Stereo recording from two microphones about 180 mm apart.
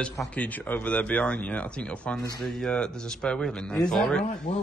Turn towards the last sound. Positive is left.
turn(degrees=40)  # may be behind; listen again after turning